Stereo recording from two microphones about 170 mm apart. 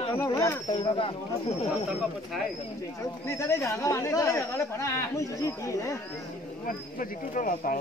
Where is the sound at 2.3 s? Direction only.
Centre (ahead or behind).